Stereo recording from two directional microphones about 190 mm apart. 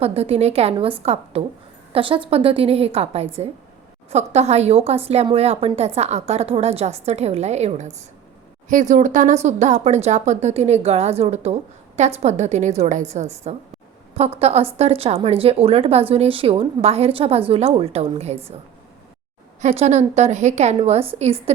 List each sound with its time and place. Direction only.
0.0 s a woman's voice: 30° right (ahead or behind)
19.6 s a woman's voice: 35° right (ahead or behind)